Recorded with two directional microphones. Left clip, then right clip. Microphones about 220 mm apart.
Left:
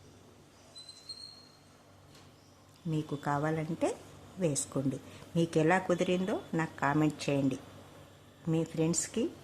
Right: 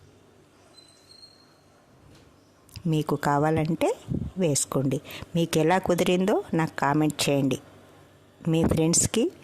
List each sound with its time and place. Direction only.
2.7 s speech: 45° right (ahead or behind)